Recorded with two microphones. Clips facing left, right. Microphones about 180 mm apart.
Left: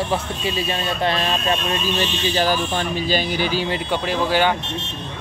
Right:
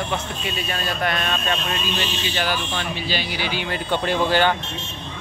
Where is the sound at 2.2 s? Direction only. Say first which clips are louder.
Left 7 dB; 40° left (ahead or behind).